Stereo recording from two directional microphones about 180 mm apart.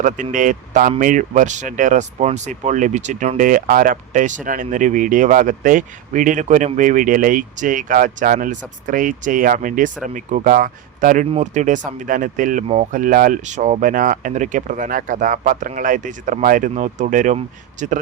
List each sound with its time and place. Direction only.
0.0 s speech: 45° right (ahead or behind)